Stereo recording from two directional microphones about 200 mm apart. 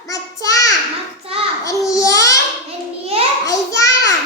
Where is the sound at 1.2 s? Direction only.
30° right (ahead or behind).